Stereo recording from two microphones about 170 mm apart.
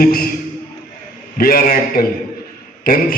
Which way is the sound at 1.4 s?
60° left (ahead or behind).